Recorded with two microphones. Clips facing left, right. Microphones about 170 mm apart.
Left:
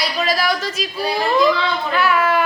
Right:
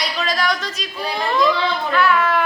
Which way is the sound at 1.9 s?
5° left (ahead or behind).